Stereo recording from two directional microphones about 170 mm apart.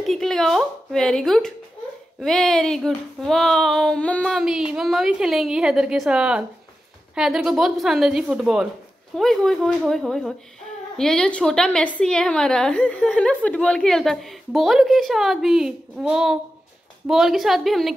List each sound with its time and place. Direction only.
0.0 s a woman's voice: centre (ahead or behind)